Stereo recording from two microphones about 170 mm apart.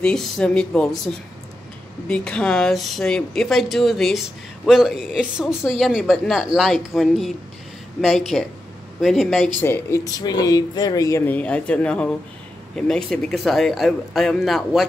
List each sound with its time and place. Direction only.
0.0 s speech: 5° left (ahead or behind)
9.6 s speech: 15° left (ahead or behind); by 14.9 s centre (ahead or behind)